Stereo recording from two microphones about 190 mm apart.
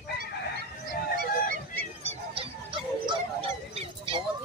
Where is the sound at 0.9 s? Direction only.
50° left (ahead or behind).